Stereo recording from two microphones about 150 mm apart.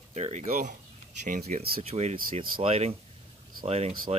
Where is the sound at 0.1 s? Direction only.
45° right (ahead or behind); by 1.7 s 75° right (ahead or behind).